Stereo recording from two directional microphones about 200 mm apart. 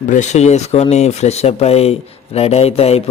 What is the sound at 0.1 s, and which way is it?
Speech, 35° left (ahead or behind).